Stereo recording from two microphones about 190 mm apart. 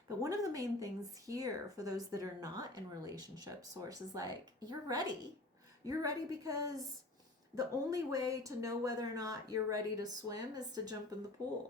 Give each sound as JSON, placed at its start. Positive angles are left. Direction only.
{"t": 0.2, "sound": "speech", "side_deg": -15}